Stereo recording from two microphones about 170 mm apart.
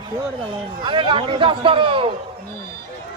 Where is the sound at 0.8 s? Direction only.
30° right (ahead or behind).